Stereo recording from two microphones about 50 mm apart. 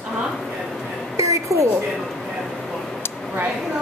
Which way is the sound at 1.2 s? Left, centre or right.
Right.